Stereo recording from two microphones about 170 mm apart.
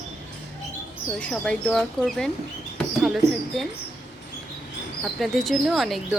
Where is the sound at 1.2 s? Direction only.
5° left (ahead or behind).